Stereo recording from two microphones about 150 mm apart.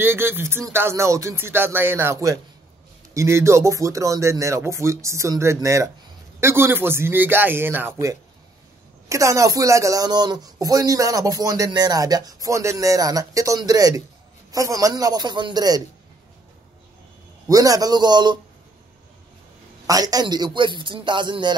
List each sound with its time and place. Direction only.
0.0 s speech: 15° right (ahead or behind)
17.5 s speech: 25° right (ahead or behind)
19.9 s a man's voice: 25° right (ahead or behind)